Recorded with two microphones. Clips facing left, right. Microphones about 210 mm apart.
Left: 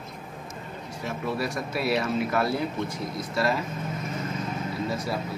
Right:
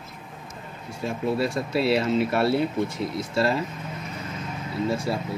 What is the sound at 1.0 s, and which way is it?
Speech, 25° right (ahead or behind).